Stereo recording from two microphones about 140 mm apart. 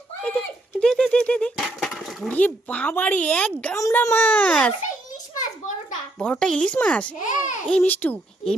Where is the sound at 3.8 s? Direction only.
20° left (ahead or behind).